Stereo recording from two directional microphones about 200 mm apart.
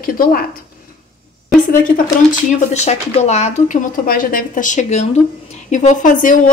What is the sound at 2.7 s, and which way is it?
A woman's voice, 35° left (ahead or behind).